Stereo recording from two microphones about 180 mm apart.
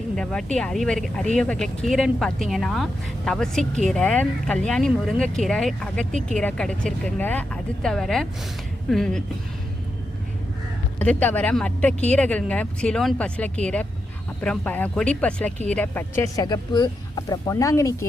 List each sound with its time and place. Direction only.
0.2 s speech: 5° left (ahead or behind)
11.0 s speech: 10° left (ahead or behind)